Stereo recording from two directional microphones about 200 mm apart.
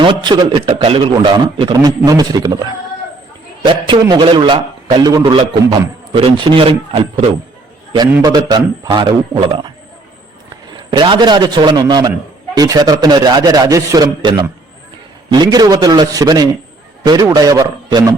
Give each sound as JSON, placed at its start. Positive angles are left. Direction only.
{"t": 0.0, "sound": "a man's voice", "side_deg": -25}
{"t": 3.7, "sound": "a man's voice", "side_deg": -25}
{"t": 10.8, "sound": "a man's voice", "side_deg": -25}